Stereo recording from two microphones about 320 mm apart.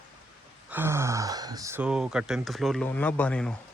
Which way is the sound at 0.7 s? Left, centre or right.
Centre.